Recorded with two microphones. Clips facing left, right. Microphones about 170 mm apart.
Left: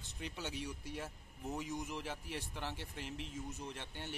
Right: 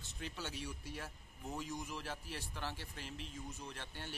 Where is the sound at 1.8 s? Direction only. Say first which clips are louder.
Left 2 dB; 20° left (ahead or behind).